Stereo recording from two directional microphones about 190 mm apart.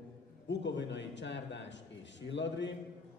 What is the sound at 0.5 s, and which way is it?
A man's voice, 70° left (ahead or behind).